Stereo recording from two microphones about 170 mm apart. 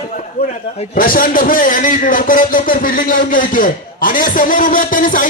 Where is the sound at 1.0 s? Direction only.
55° left (ahead or behind).